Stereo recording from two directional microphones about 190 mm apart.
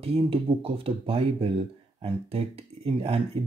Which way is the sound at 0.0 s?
30° right (ahead or behind).